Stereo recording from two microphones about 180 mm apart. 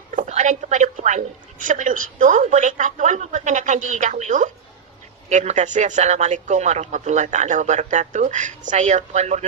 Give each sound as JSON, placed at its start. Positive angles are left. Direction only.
{"t": 0.1, "sound": "a woman's voice", "side_deg": -45}